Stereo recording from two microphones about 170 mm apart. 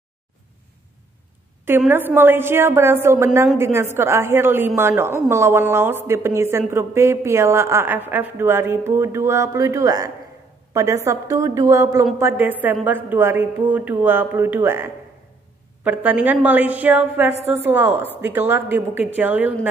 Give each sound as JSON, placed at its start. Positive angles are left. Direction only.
{"t": 1.9, "sound": "a woman's voice", "side_deg": -10}